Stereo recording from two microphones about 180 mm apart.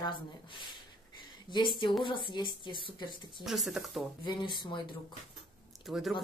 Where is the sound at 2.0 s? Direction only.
25° left (ahead or behind).